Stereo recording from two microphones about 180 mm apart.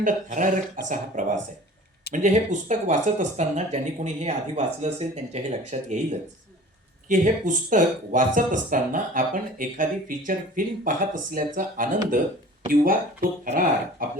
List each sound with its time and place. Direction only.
0.0 s speech: 45° right (ahead or behind)
14.0 s speech: 50° right (ahead or behind)